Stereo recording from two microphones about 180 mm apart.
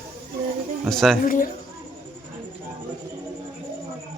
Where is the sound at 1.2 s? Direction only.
50° left (ahead or behind).